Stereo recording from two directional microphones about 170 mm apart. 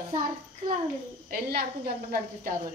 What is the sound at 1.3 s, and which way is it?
Speech, 65° right (ahead or behind).